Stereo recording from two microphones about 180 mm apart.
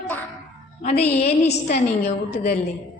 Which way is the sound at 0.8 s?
35° left (ahead or behind).